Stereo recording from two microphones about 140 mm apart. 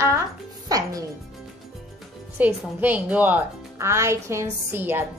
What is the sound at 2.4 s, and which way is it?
A woman's voice, 15° right (ahead or behind).